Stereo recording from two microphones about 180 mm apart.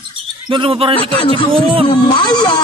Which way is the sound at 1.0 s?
30° left (ahead or behind).